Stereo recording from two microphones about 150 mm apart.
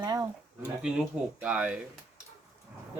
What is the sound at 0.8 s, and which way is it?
Speech, 5° right (ahead or behind).